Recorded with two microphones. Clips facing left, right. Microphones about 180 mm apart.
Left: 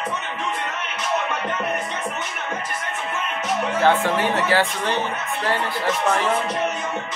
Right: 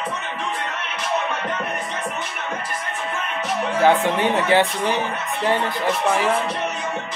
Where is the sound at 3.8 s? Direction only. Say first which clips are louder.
Right 2 dB; 20° right (ahead or behind).